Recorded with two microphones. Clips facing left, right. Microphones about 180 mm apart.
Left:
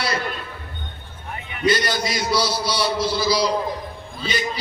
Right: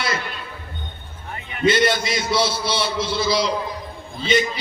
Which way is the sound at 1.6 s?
25° right (ahead or behind).